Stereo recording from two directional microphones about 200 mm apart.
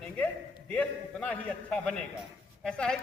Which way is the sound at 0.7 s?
5° left (ahead or behind).